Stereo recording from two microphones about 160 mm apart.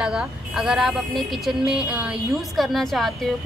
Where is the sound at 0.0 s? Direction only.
5° right (ahead or behind).